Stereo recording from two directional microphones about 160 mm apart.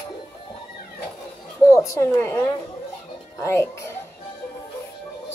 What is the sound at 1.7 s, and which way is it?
Speech, 20° left (ahead or behind).